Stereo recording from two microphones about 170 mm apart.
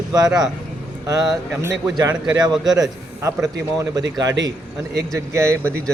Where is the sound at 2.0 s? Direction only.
25° right (ahead or behind).